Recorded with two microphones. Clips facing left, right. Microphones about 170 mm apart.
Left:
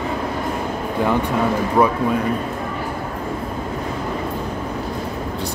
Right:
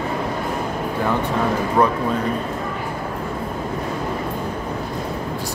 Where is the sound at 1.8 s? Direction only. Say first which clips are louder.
Left 1 dB; 10° left (ahead or behind).